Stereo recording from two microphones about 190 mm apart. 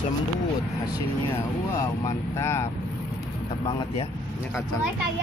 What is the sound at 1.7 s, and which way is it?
Speech, 15° left (ahead or behind).